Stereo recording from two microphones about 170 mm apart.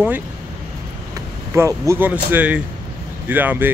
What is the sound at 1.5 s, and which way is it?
Speech, 15° right (ahead or behind).